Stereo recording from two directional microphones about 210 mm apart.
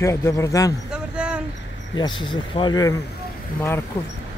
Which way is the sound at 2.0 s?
20° left (ahead or behind).